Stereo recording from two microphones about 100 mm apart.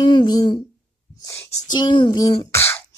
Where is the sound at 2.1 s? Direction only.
40° left (ahead or behind).